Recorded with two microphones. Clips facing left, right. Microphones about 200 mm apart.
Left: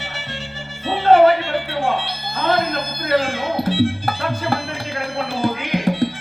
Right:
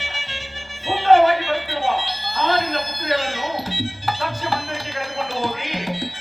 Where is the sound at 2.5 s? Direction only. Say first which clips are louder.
Left 4 dB; 55° left (ahead or behind).